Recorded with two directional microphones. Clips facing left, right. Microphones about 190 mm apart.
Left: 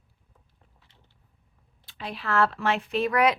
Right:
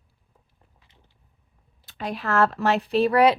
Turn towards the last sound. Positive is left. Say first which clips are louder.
# right 5 dB
turn(degrees=-35)  # may be behind; listen again after turning